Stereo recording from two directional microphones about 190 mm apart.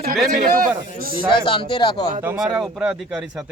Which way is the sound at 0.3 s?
45° right (ahead or behind).